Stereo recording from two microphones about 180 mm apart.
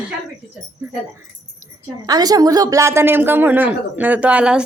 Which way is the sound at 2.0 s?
20° right (ahead or behind).